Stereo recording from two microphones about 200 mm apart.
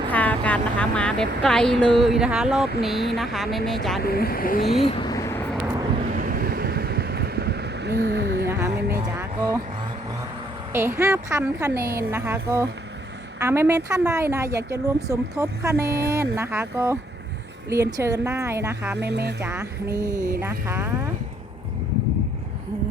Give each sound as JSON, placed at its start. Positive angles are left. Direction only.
{"t": 0.1, "sound": "speech", "side_deg": 5}
{"t": 4.0, "sound": "speech", "side_deg": 50}
{"t": 4.9, "sound": "vehicle", "side_deg": 20}
{"t": 6.0, "sound": "vehicle", "side_deg": -45}
{"t": 8.4, "sound": "a sound", "side_deg": -15}
{"t": 10.7, "sound": "speech", "side_deg": -10}
{"t": 15.8, "sound": "speech", "side_deg": -50}
{"t": 16.1, "sound": "speech", "side_deg": -15}
{"t": 18.9, "sound": "music", "side_deg": -55}
{"t": 19.4, "sound": "speech", "side_deg": -10}